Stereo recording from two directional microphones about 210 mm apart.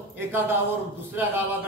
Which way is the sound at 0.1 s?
10° right (ahead or behind).